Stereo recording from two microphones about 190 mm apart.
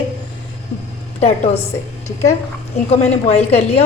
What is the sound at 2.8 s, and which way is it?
Speech, 35° left (ahead or behind).